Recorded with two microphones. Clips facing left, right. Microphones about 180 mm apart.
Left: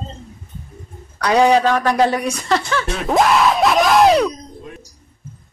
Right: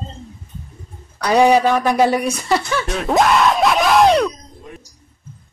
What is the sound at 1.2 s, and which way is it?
A woman's voice, 5° right (ahead or behind).